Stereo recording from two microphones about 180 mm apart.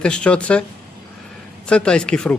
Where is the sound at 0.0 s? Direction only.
5° left (ahead or behind).